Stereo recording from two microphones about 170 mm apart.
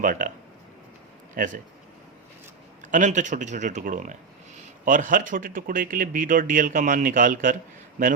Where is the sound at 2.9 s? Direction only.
45° right (ahead or behind).